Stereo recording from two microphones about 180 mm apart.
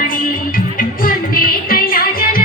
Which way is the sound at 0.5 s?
50° left (ahead or behind).